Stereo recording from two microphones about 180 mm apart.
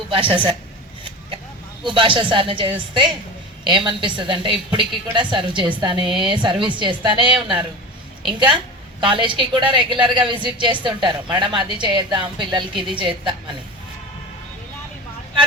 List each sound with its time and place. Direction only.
0.1 s a woman's voice: 30° right (ahead or behind)
1.8 s a woman's voice: 30° right (ahead or behind)